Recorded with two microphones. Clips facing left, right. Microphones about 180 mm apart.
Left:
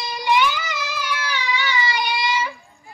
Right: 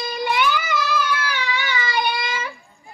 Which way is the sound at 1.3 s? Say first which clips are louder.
Left 1 dB; 55° right (ahead or behind).